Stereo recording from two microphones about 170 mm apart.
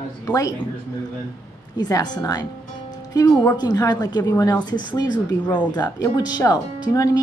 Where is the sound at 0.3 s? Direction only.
20° left (ahead or behind).